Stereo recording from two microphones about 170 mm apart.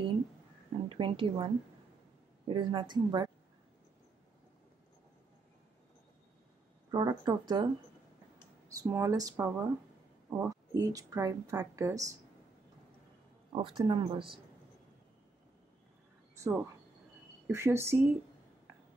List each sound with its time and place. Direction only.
0.8 s a woman's voice: 30° right (ahead or behind)
6.9 s speech: 20° right (ahead or behind)
13.6 s speech: 30° right (ahead or behind)
16.3 s speech: 15° right (ahead or behind)